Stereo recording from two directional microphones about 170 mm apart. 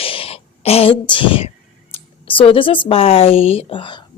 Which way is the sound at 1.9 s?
30° left (ahead or behind).